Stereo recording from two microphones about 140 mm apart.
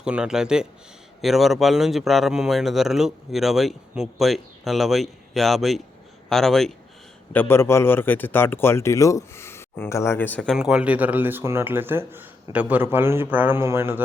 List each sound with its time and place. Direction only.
0.0 s speech: 5° right (ahead or behind)
7.3 s speech: 15° left (ahead or behind)
10.5 s speech: 5° right (ahead or behind)